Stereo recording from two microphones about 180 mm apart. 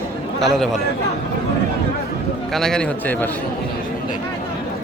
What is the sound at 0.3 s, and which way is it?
Speech, centre (ahead or behind).